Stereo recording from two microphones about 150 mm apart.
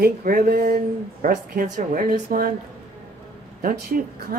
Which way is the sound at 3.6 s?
70° right (ahead or behind).